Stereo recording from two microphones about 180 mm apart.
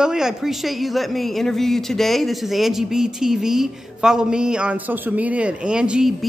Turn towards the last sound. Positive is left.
turn(degrees=0)  # may be behind; listen again after turning